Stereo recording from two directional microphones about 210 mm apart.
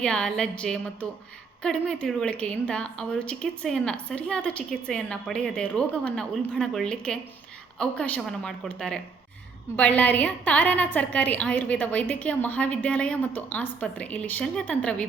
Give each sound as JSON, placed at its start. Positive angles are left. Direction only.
{"t": 0.0, "sound": "a woman's voice", "side_deg": 5}